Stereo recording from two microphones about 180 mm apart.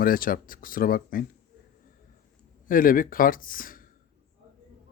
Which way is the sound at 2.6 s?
50° left (ahead or behind).